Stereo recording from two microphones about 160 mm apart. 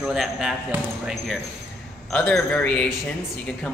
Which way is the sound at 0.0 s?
5° right (ahead or behind).